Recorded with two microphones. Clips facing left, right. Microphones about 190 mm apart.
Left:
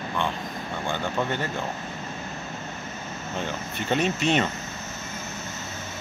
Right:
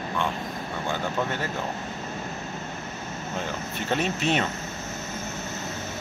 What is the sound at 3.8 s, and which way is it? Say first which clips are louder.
Speech: left 2 dB; centre (ahead or behind).